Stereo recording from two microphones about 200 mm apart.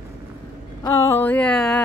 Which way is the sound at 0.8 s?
15° left (ahead or behind).